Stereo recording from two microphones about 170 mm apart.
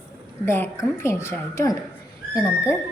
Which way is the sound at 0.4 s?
15° left (ahead or behind).